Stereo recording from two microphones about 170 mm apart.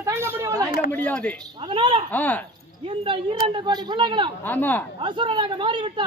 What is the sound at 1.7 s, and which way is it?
Speech, 30° right (ahead or behind).